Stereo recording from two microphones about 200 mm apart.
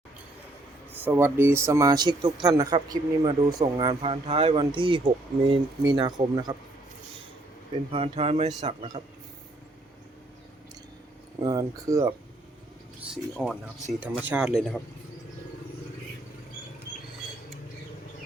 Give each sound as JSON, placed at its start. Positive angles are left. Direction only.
{"t": 1.0, "sound": "speech", "side_deg": -10}
{"t": 7.9, "sound": "speech", "side_deg": -30}
{"t": 11.4, "sound": "speech", "side_deg": -20}
{"t": 13.3, "sound": "speech", "side_deg": -5}